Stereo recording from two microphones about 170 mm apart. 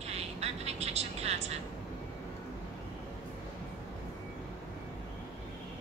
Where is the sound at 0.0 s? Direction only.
40° right (ahead or behind).